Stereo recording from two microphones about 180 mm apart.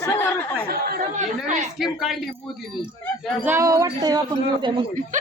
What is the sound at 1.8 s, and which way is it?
Speech, centre (ahead or behind).